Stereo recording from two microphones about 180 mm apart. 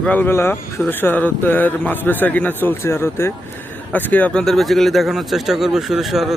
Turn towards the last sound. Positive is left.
turn(degrees=0)  # may be behind; listen again after turning